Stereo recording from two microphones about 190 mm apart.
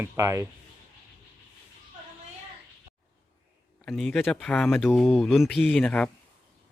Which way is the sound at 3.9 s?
Centre (ahead or behind).